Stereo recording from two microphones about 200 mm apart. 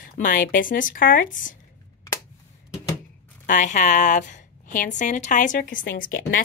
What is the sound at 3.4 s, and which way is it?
Speech, 40° left (ahead or behind).